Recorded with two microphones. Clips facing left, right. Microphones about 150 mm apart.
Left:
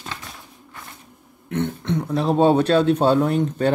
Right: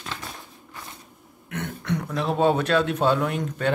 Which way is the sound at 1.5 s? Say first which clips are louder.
Left 5 dB; 25° left (ahead or behind).